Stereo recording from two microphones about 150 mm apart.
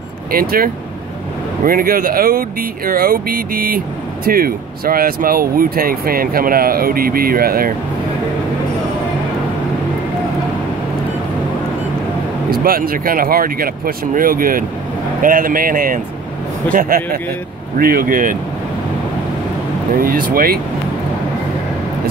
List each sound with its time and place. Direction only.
0.3 s speech: 75° right (ahead or behind)
1.7 s speech: 70° right (ahead or behind)
12.4 s speech: 75° right (ahead or behind)
20.0 s speech: 70° right (ahead or behind)